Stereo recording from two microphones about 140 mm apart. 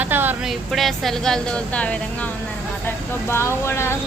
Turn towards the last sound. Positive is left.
turn(degrees=20)  # may be behind; listen again after turning